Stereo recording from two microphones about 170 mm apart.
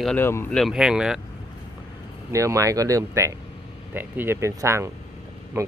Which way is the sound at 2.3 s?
20° right (ahead or behind).